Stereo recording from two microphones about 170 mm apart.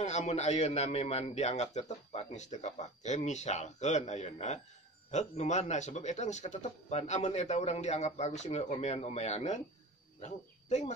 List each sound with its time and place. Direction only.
0.0 s a man's voice: 40° left (ahead or behind)